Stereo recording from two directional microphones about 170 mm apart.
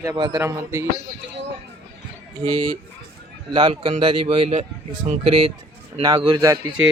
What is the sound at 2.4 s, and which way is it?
Speech, 30° right (ahead or behind).